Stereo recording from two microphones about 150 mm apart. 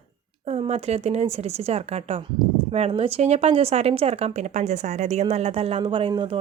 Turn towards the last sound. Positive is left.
turn(degrees=-35)  # may be behind; listen again after turning